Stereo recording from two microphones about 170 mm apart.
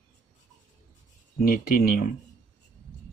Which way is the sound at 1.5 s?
55° left (ahead or behind).